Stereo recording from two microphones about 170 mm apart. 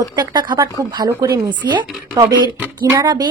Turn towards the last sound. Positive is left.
turn(degrees=-25)  # may be behind; listen again after turning